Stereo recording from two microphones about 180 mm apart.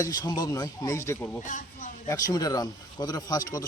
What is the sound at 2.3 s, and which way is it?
Speech, 20° left (ahead or behind).